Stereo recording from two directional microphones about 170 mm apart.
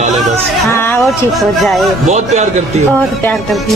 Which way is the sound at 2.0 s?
40° right (ahead or behind).